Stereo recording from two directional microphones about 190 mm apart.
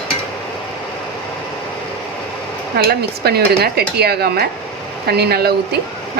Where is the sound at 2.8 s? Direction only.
55° right (ahead or behind).